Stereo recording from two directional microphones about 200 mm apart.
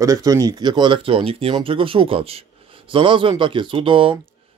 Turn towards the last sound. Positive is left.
turn(degrees=-25)  # may be behind; listen again after turning